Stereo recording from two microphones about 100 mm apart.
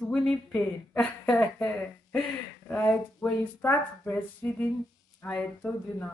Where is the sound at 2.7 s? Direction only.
15° left (ahead or behind).